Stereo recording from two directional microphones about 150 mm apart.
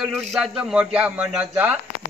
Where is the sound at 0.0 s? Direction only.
5° right (ahead or behind).